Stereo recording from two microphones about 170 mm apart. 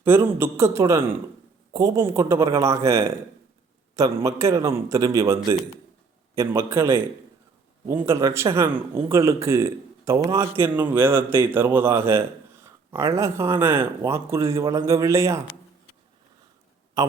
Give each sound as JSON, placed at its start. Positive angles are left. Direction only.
{"t": 0.0, "sound": "a man's voice", "side_deg": -15}
{"t": 17.0, "sound": "a man's voice", "side_deg": -20}